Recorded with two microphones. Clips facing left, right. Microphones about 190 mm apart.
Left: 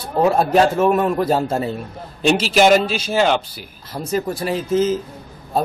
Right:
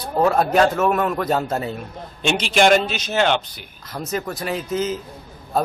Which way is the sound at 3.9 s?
30° left (ahead or behind).